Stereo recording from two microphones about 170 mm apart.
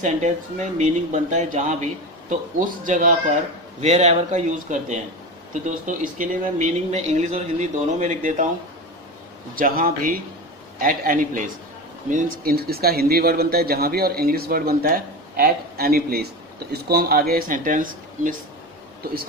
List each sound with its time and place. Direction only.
0.0 s speech: 45° right (ahead or behind)
9.6 s speech: 55° right (ahead or behind)